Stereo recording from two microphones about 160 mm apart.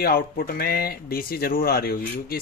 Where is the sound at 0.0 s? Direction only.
70° left (ahead or behind).